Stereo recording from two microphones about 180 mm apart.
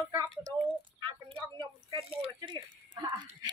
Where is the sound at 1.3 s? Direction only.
30° right (ahead or behind).